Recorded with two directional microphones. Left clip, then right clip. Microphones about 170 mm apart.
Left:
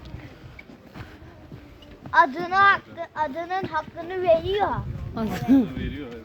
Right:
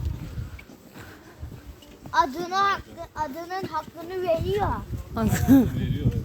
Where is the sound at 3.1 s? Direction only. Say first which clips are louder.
Left 4 dB; centre (ahead or behind).